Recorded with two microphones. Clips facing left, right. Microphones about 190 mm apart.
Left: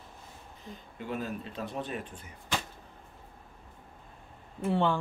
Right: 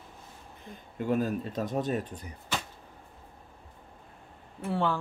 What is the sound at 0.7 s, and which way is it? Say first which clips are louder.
Speech: right 8 dB; 45° right (ahead or behind).